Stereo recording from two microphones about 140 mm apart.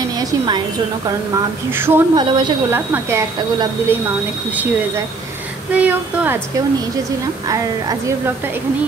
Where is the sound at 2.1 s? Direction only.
35° right (ahead or behind).